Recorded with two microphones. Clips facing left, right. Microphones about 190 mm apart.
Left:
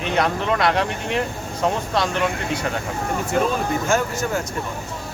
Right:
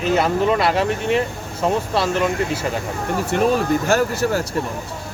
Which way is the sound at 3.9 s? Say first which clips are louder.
Right 2 dB; 35° right (ahead or behind).